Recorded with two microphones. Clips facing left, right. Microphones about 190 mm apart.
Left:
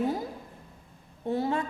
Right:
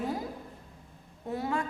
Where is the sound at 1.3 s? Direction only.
30° left (ahead or behind).